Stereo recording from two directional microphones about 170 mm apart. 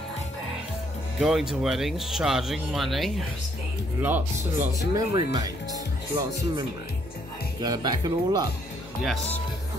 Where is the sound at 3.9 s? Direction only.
10° right (ahead or behind).